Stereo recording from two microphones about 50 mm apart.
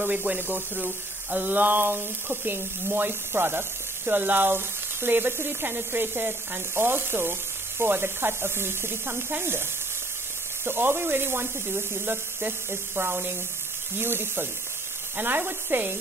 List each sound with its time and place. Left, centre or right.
0.1 s speech: right
0.4 s speech: right
10.6 s speech: right